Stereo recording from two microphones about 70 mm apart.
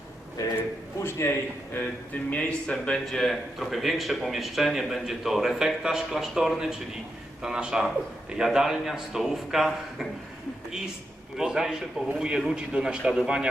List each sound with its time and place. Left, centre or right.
0.4 s a man's voice: left
0.9 s a man's voice: left
2.3 s speech: centre
3.1 s a man's voice: centre
11.3 s a man's voice: centre